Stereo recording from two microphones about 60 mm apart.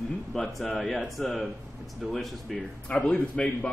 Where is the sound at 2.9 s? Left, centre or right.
Left.